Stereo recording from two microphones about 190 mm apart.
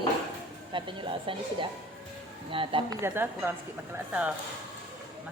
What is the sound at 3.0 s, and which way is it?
A woman's voice, 10° right (ahead or behind).